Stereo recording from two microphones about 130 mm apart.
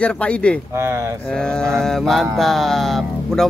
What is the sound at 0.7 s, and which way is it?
Speech, 20° right (ahead or behind).